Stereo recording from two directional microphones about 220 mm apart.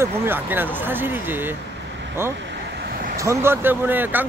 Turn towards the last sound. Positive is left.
turn(degrees=-10)  # may be behind; listen again after turning